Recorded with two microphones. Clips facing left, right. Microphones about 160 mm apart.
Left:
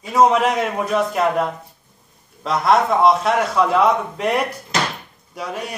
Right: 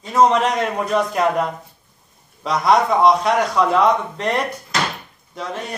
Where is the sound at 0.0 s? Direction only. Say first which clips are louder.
Even; 5° left (ahead or behind).